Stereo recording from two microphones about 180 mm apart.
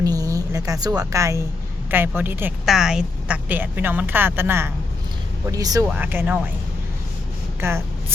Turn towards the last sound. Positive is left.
turn(degrees=-15)  # may be behind; listen again after turning